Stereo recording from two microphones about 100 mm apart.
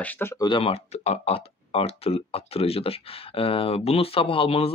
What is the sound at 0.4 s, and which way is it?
Speech, 60° left (ahead or behind).